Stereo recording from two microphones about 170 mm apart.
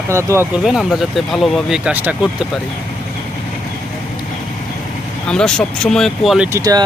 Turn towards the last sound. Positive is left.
turn(degrees=-20)  # may be behind; listen again after turning